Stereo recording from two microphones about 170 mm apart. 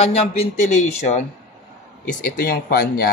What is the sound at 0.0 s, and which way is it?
Speech, 35° left (ahead or behind).